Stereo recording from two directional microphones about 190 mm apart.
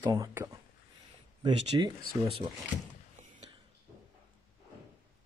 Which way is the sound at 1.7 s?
20° right (ahead or behind).